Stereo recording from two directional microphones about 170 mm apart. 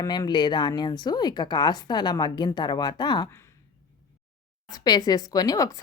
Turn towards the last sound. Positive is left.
turn(degrees=20)  # may be behind; listen again after turning